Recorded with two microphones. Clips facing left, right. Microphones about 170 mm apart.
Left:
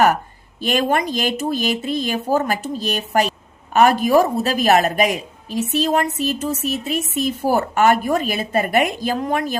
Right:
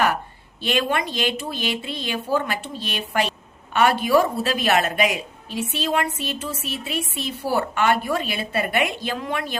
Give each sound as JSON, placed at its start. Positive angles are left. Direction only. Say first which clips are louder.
{"t": 0.6, "sound": "speech", "louder": "left 4 dB", "side_deg": 40}